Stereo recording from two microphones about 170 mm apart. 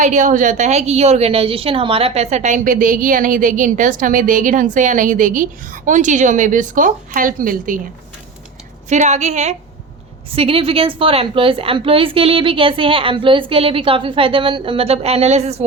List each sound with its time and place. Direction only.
0.0 s a woman's voice: 45° right (ahead or behind)
8.9 s a woman's voice: 45° right (ahead or behind)